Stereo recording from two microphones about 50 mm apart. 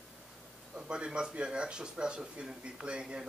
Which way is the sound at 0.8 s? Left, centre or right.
Centre.